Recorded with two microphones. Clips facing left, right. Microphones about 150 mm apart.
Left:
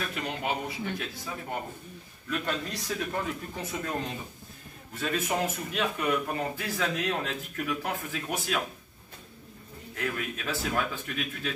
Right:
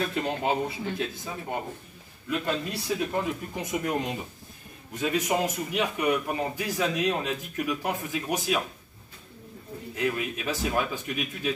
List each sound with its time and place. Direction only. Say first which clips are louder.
0.0 s a man's voice: right 5 dB; 25° right (ahead or behind)
9.9 s speech: right 4 dB; 15° right (ahead or behind)